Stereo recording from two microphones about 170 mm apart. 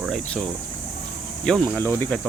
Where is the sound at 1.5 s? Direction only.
5° left (ahead or behind).